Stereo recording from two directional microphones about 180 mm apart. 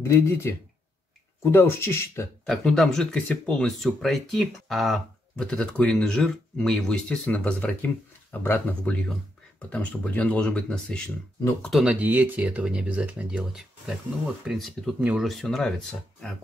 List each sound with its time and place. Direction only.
0.0 s speech: 15° left (ahead or behind)
2.4 s speech: centre (ahead or behind)